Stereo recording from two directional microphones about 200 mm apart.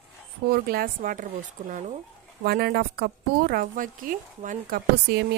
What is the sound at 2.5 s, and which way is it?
Speech, 50° right (ahead or behind).